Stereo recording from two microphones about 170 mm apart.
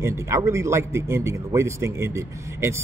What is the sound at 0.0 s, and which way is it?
Speech, 15° right (ahead or behind).